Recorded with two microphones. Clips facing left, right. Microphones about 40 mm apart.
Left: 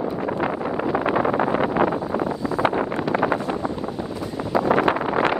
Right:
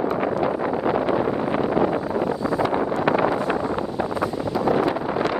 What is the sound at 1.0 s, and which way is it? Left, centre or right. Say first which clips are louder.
Vehicle: left 1 dB; left.